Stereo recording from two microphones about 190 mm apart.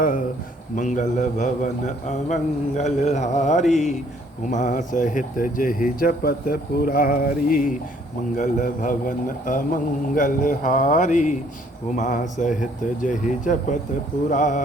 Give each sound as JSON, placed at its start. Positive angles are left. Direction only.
{"t": 0.8, "sound": "a man's voice", "side_deg": 40}